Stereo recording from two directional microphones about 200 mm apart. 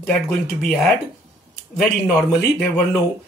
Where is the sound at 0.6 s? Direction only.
5° left (ahead or behind).